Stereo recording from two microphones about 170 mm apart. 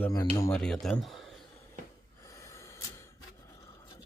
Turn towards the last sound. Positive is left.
turn(degrees=20)  # may be behind; listen again after turning